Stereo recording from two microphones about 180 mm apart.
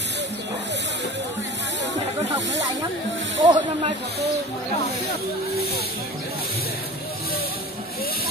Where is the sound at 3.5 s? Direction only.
35° right (ahead or behind).